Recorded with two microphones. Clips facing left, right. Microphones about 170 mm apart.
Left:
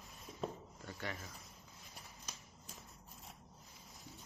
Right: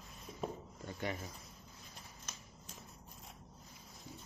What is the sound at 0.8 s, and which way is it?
Rub, 20° right (ahead or behind).